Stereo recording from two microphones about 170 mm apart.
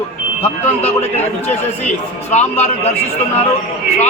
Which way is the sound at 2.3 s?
40° left (ahead or behind).